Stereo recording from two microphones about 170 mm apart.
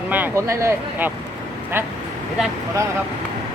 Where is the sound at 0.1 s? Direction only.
15° right (ahead or behind).